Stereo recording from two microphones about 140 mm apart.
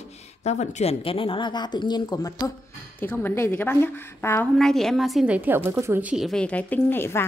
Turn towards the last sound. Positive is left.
turn(degrees=15)  # may be behind; listen again after turning